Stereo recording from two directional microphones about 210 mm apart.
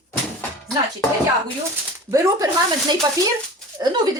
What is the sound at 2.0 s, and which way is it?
Speech, 15° right (ahead or behind).